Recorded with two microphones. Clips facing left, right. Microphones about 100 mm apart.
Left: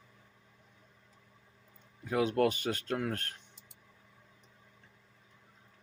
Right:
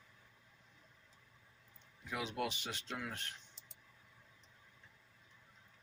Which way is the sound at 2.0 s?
45° left (ahead or behind).